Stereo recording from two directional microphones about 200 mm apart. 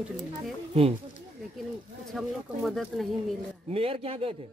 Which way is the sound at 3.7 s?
30° right (ahead or behind).